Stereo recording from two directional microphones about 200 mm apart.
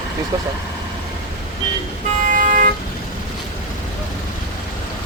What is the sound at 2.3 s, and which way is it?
Vehicle, 40° right (ahead or behind).